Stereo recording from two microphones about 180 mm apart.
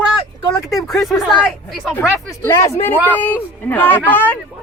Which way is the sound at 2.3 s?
15° left (ahead or behind).